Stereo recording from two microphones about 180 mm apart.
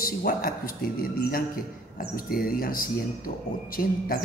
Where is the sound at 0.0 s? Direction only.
55° left (ahead or behind).